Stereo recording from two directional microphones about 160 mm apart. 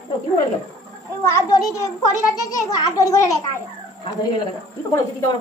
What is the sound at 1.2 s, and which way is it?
A child's voice, 20° left (ahead or behind).